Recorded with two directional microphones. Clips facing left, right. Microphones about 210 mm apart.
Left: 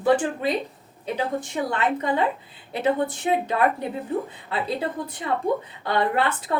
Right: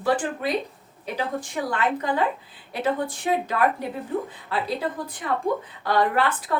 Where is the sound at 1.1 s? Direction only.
25° left (ahead or behind).